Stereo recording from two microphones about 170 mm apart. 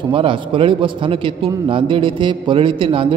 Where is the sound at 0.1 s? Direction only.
30° right (ahead or behind).